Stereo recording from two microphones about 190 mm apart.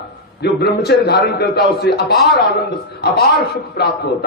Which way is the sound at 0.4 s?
60° left (ahead or behind).